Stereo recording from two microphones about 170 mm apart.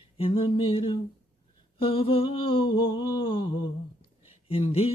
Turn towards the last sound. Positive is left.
turn(degrees=35)  # may be behind; listen again after turning